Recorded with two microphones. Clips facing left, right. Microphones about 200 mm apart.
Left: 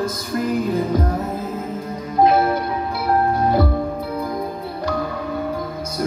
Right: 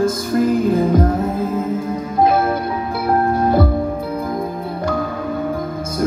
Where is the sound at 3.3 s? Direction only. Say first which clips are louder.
Right 2 dB; 50° right (ahead or behind).